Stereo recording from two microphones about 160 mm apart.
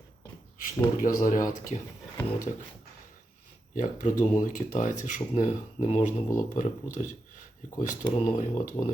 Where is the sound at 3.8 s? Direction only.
50° left (ahead or behind).